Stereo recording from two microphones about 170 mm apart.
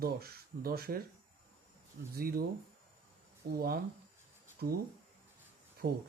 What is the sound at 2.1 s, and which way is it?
Speech, 60° right (ahead or behind).